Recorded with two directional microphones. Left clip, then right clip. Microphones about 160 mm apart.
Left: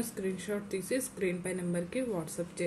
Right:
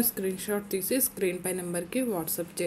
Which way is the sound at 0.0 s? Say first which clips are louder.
Right 5 dB; 25° right (ahead or behind).